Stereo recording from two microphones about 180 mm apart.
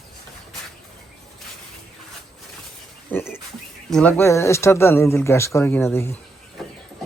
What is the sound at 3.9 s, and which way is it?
Speech, 5° left (ahead or behind).